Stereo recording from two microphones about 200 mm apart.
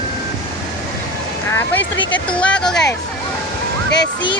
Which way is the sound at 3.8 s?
60° left (ahead or behind).